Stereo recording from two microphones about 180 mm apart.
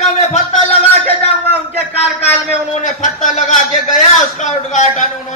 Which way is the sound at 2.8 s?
45° left (ahead or behind).